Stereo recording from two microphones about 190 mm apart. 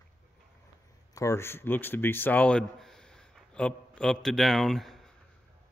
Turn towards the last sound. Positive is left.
turn(degrees=0)  # may be behind; listen again after turning